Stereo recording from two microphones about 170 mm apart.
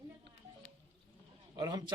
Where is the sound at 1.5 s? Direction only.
25° right (ahead or behind).